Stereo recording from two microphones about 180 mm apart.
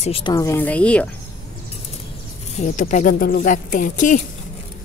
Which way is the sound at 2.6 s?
45° left (ahead or behind).